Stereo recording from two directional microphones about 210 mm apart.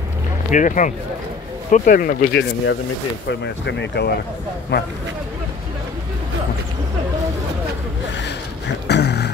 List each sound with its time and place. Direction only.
0.5 s speech: 40° left (ahead or behind)
3.3 s speech: 55° left (ahead or behind)
8.2 s a sound: 55° left (ahead or behind)